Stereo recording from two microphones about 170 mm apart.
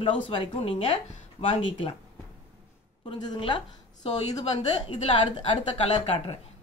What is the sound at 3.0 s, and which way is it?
A woman's voice, 25° left (ahead or behind).